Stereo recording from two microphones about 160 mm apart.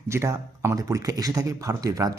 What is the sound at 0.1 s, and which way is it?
A man's voice, 15° right (ahead or behind).